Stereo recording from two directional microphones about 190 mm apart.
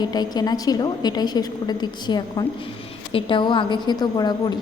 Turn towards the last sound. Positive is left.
turn(degrees=20)  # may be behind; listen again after turning